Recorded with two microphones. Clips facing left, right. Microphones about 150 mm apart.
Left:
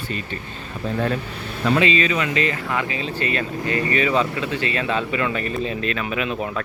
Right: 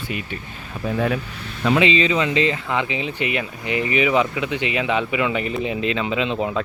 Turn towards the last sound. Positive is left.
turn(degrees=-20)  # may be behind; listen again after turning